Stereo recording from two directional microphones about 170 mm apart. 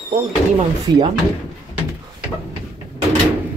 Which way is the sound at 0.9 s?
25° right (ahead or behind).